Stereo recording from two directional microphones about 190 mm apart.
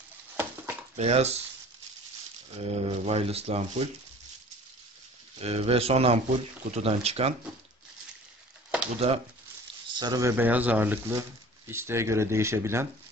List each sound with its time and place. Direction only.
0.9 s speech: 35° right (ahead or behind)
2.6 s speech: 30° right (ahead or behind)
5.4 s speech: 30° right (ahead or behind)
9.0 s speech: 35° right (ahead or behind)
9.9 s speech: 20° right (ahead or behind)